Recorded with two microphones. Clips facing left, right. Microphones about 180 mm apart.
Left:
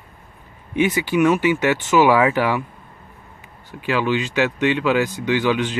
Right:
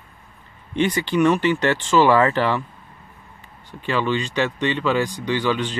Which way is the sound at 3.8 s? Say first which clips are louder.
Left 2 dB; 10° left (ahead or behind).